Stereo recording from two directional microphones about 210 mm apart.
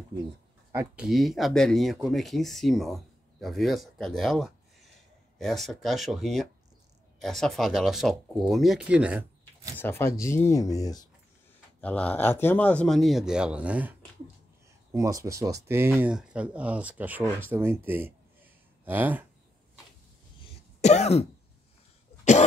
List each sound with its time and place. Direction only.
0.7 s speech: 10° right (ahead or behind)
1.0 s speech: centre (ahead or behind)
9.8 s speech: 10° left (ahead or behind)
11.8 s speech: 5° left (ahead or behind)
20.8 s throat clearing: 30° left (ahead or behind)